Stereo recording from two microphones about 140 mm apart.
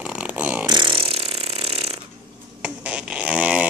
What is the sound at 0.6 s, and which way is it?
Mechanisms, 35° right (ahead or behind).